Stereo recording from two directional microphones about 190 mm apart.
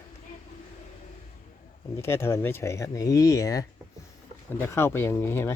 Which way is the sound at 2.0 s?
10° left (ahead or behind).